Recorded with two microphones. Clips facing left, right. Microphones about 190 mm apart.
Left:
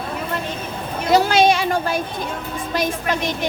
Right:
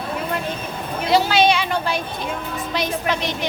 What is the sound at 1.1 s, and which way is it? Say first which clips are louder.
A woman's voice: left 2 dB; 45° left (ahead or behind).